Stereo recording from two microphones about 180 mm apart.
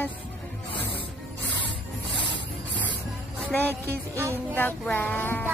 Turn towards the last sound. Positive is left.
turn(degrees=10)  # may be behind; listen again after turning